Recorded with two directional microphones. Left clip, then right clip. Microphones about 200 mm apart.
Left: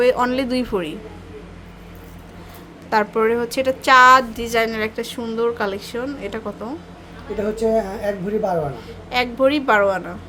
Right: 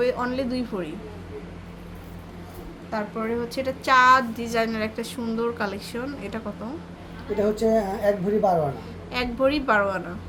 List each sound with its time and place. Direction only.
0.0 s speech: 30° left (ahead or behind)
2.9 s a woman's voice: 45° left (ahead or behind); by 6.4 s 20° left (ahead or behind)
7.5 s speech: centre (ahead or behind)
9.0 s a woman's voice: 20° left (ahead or behind)